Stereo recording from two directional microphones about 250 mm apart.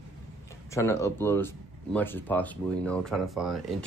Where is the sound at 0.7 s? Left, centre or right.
Centre.